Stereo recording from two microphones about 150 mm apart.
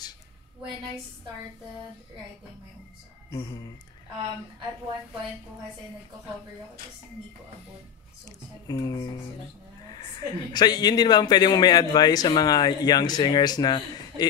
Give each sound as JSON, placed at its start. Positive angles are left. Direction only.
{"t": 3.3, "sound": "a woman's voice", "side_deg": 25}
{"t": 8.3, "sound": "a woman's voice", "side_deg": 25}